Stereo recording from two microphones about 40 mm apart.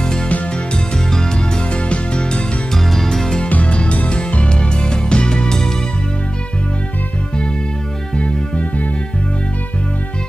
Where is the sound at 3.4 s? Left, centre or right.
Left; by 5.7 s centre.